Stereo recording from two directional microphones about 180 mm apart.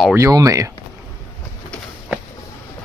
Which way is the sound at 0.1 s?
20° right (ahead or behind).